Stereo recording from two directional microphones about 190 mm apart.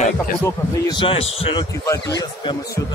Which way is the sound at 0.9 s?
30° left (ahead or behind).